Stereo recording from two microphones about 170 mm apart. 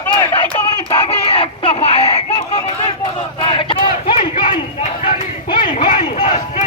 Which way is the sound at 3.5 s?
30° left (ahead or behind).